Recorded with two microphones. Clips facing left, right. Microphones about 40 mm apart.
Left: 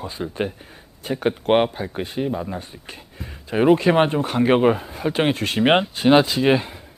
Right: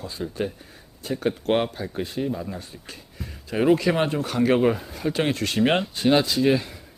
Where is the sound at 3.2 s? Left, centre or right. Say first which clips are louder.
Left 4 dB; left.